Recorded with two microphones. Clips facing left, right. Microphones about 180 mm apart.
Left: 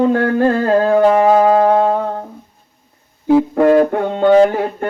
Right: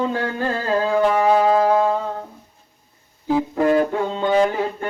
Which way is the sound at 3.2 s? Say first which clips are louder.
Left 7 dB; 60° left (ahead or behind).